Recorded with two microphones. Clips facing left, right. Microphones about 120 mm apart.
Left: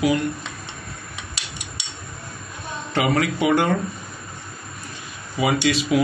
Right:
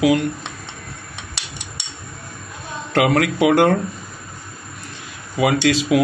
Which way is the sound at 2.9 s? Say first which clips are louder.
Right 4 dB; 80° right.